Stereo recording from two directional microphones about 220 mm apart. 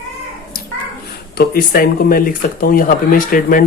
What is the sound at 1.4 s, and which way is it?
Speech, 40° left (ahead or behind).